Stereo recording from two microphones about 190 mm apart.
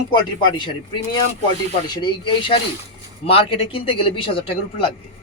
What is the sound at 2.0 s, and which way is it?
A man's voice, 25° left (ahead or behind).